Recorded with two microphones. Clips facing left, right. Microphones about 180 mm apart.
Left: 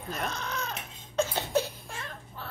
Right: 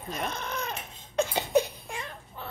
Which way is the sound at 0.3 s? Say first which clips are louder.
Right 1 dB; 20° right (ahead or behind).